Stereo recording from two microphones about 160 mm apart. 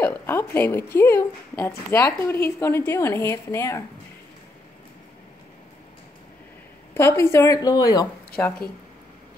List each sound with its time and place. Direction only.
0.0 s speech: 15° left (ahead or behind)
6.9 s speech: 15° left (ahead or behind)